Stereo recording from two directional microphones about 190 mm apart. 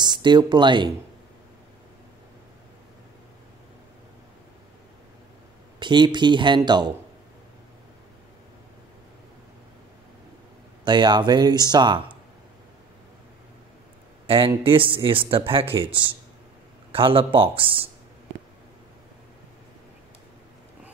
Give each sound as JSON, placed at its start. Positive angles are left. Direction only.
{"t": 0.0, "sound": "speech", "side_deg": -25}
{"t": 5.8, "sound": "speech", "side_deg": -25}
{"t": 10.8, "sound": "speech", "side_deg": -25}
{"t": 14.2, "sound": "speech", "side_deg": -30}